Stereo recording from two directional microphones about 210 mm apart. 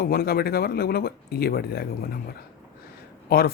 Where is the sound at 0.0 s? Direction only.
45° left (ahead or behind).